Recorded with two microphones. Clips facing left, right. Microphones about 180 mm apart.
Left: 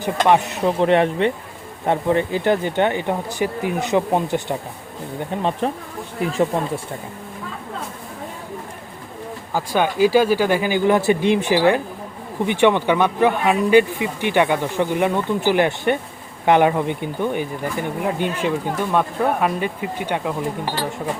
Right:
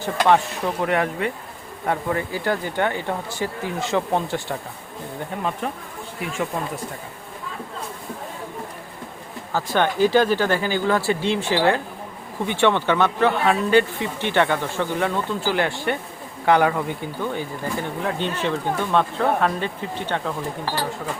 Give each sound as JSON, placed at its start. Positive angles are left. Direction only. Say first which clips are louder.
{"t": 0.0, "sound": "speech", "louder": "left 2 dB", "side_deg": 20}
{"t": 5.4, "sound": "speech", "louder": "left 5 dB", "side_deg": 30}
{"t": 9.5, "sound": "speech", "louder": "left 1 dB", "side_deg": 10}